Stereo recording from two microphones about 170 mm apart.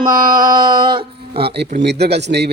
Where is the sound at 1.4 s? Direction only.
70° right (ahead or behind).